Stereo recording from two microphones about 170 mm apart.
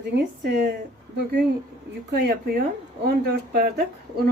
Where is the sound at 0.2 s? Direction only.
80° right.